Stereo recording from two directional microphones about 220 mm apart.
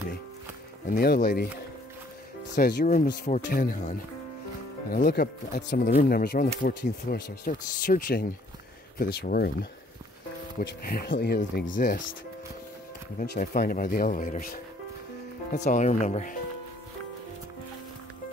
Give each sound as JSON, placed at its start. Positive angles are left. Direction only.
{"t": 0.8, "sound": "speech", "side_deg": 45}
{"t": 2.5, "sound": "speech", "side_deg": 45}
{"t": 4.9, "sound": "speech", "side_deg": 40}
{"t": 13.2, "sound": "speech", "side_deg": 40}